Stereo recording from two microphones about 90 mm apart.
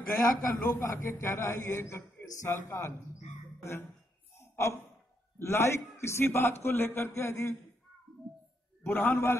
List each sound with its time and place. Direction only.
0.2 s a man's voice: 30° left (ahead or behind)
4.4 s a sound: 30° left (ahead or behind)
5.4 s a man's voice: 30° left (ahead or behind)
8.9 s a man's voice: 25° left (ahead or behind)